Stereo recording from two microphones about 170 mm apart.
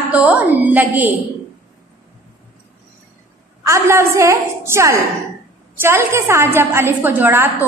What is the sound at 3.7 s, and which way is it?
A woman's voice, 15° right (ahead or behind).